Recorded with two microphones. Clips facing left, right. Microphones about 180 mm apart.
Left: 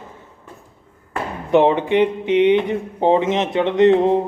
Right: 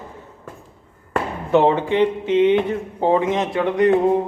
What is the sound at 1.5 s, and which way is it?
A man's voice, 20° left (ahead or behind).